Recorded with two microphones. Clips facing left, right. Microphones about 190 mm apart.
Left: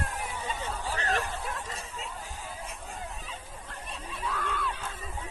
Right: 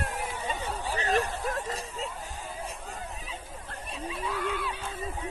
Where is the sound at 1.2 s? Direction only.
40° right (ahead or behind).